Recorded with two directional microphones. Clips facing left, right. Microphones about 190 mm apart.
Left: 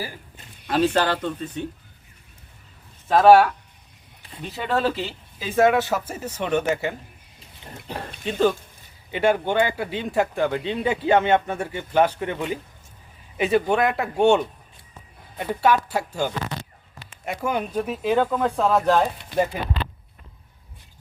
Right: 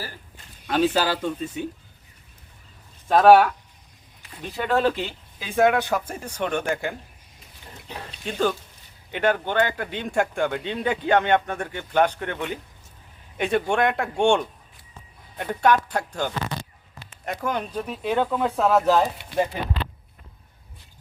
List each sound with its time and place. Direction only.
0.7 s speech: centre (ahead or behind)
3.1 s speech: centre (ahead or behind)
8.2 s speech: centre (ahead or behind)